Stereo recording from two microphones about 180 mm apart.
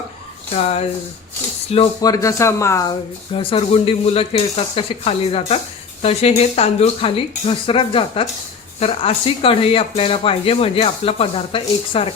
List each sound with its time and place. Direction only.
0.5 s speech: 35° left (ahead or behind)
2.0 s speech: 20° left (ahead or behind)
3.3 s speech: 30° left (ahead or behind)